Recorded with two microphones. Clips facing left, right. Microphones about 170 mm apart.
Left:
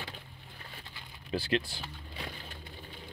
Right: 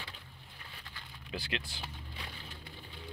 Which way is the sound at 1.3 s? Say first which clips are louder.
Left 9 dB; 35° left (ahead or behind).